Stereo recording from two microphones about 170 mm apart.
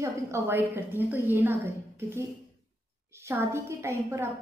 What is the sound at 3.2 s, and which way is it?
A woman's voice, 15° right (ahead or behind).